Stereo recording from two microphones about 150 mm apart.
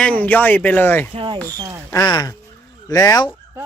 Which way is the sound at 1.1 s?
30° right (ahead or behind).